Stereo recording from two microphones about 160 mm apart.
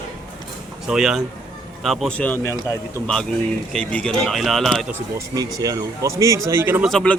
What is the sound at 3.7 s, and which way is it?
Speech, 5° left (ahead or behind).